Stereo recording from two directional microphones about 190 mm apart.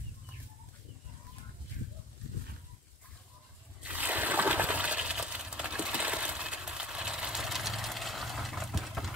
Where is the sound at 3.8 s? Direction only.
10° right (ahead or behind).